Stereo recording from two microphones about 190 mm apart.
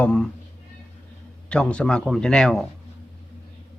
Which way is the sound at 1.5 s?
5° left (ahead or behind).